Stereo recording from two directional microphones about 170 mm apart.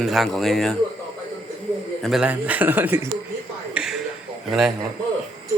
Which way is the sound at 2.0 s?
5° right (ahead or behind).